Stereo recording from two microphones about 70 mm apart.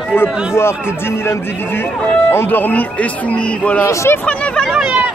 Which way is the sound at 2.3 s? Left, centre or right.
Left.